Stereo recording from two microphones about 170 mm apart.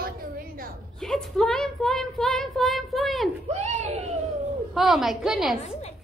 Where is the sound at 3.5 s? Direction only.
40° right (ahead or behind).